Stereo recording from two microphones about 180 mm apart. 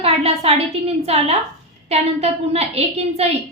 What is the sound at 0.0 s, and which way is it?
A woman's voice, 35° right (ahead or behind).